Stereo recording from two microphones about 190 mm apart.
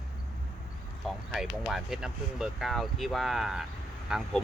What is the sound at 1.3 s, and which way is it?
Speech, centre (ahead or behind).